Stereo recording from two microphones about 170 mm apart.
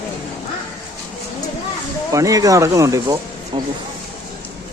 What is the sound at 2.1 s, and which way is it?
Speech, 20° right (ahead or behind).